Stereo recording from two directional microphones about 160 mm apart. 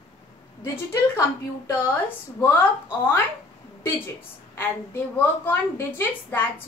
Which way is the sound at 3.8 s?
15° left (ahead or behind).